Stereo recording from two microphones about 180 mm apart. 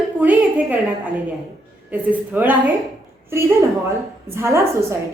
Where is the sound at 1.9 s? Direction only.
10° right (ahead or behind).